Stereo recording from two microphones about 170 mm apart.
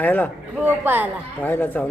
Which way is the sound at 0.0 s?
10° left (ahead or behind).